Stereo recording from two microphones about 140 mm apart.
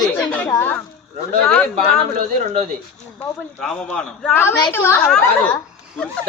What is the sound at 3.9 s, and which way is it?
A woman's voice, 5° left (ahead or behind).